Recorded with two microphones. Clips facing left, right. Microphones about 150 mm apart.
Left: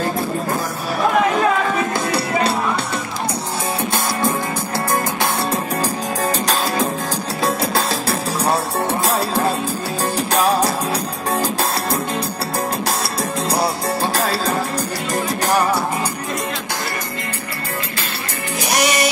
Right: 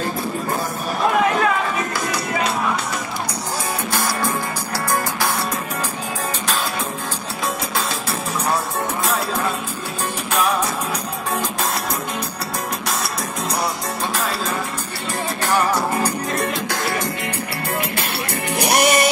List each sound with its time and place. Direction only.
2.0 s music: 30° left (ahead or behind)
6.4 s music: 40° left (ahead or behind)
14.1 s music: 35° left (ahead or behind)
18.6 s music: 55° right (ahead or behind)